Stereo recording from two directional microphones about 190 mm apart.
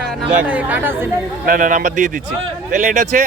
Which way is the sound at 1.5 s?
45° right (ahead or behind).